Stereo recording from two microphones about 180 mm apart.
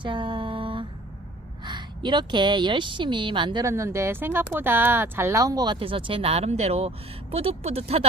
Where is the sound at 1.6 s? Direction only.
25° right (ahead or behind).